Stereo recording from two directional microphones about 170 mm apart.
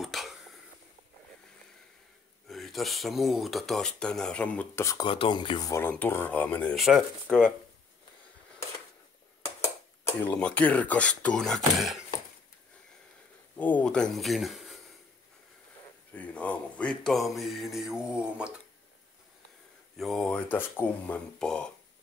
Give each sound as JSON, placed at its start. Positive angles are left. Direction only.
{"t": 0.0, "sound": "a sound", "side_deg": 0}
{"t": 2.4, "sound": "speech", "side_deg": 0}
{"t": 5.0, "sound": "speech", "side_deg": 30}
{"t": 5.7, "sound": "speech", "side_deg": 10}
{"t": 10.0, "sound": "speech", "side_deg": 10}
{"t": 13.6, "sound": "speech", "side_deg": 10}
{"t": 16.1, "sound": "speech", "side_deg": 10}
{"t": 20.0, "sound": "speech", "side_deg": 5}